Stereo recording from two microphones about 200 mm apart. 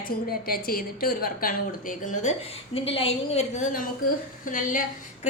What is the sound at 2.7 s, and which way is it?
A woman's voice, 30° left (ahead or behind).